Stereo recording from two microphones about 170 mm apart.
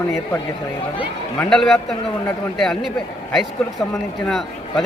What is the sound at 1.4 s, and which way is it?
Speech, 5° left (ahead or behind).